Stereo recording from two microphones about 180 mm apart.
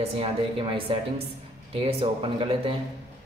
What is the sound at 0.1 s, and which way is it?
Speech, 30° right (ahead or behind).